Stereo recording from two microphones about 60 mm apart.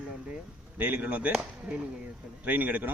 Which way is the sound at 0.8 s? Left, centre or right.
Right.